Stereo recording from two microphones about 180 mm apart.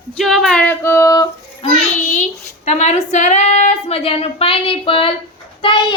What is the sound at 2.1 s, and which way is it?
A child's voice, 40° left (ahead or behind).